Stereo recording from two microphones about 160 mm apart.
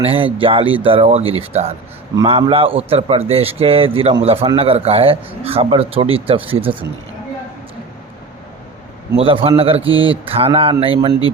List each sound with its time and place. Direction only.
0.0 s speech: 35° right (ahead or behind)
9.1 s speech: 35° right (ahead or behind)